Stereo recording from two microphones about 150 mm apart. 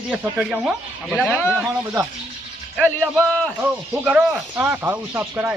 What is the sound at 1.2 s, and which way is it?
Speech, 15° left (ahead or behind).